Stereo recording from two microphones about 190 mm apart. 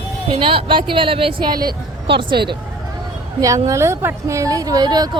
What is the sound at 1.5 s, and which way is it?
Speech, 50° right (ahead or behind).